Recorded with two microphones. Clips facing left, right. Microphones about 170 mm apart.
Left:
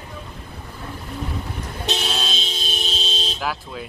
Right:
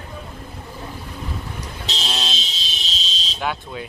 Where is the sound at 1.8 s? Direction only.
55° left (ahead or behind).